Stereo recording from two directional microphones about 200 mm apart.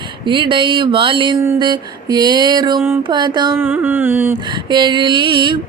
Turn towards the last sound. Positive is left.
turn(degrees=-25)  # may be behind; listen again after turning